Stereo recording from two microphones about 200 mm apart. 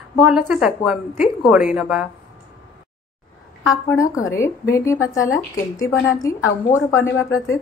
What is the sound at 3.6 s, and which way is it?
A woman's voice, 15° left (ahead or behind).